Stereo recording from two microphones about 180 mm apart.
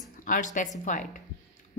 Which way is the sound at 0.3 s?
45° left (ahead or behind).